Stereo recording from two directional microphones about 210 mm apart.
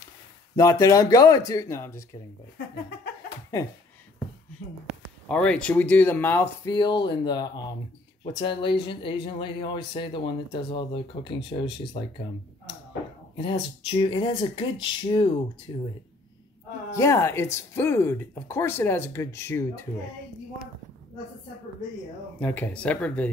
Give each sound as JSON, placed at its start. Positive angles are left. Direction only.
{"t": 0.6, "sound": "speech", "side_deg": 15}
{"t": 5.3, "sound": "speech", "side_deg": 5}
{"t": 13.4, "sound": "speech", "side_deg": 25}
{"t": 16.9, "sound": "speech", "side_deg": 15}
{"t": 22.4, "sound": "speech", "side_deg": 5}